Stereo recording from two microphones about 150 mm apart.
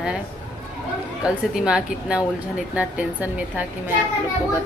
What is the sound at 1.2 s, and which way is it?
A woman's voice, 5° right (ahead or behind).